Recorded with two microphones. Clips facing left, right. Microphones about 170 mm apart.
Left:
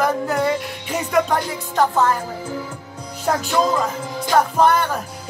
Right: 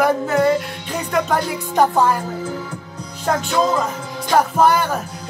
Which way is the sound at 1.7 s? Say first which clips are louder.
Right 2 dB; 15° right (ahead or behind).